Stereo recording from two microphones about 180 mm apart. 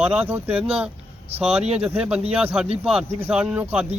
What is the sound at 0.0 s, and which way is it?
Speech, 5° right (ahead or behind).